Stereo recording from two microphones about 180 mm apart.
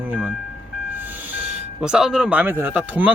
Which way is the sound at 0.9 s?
10° right (ahead or behind).